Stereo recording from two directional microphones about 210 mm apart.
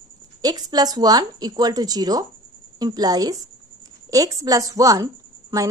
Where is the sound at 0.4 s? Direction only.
20° right (ahead or behind).